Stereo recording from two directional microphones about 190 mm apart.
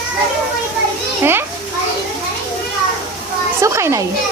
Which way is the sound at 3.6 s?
15° right (ahead or behind).